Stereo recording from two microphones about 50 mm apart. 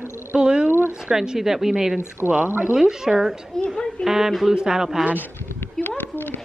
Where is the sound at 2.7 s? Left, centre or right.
Centre.